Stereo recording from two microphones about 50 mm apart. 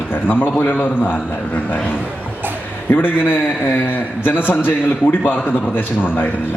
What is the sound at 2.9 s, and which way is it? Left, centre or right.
A man's voice, left.